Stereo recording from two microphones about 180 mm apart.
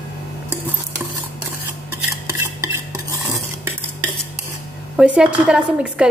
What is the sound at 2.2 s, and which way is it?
Cutlery, 15° right (ahead or behind).